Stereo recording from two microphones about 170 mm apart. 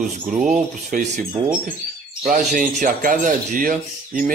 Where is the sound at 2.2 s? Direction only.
50° right (ahead or behind).